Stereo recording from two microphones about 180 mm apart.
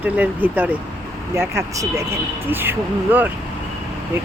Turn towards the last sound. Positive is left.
turn(degrees=-10)  # may be behind; listen again after turning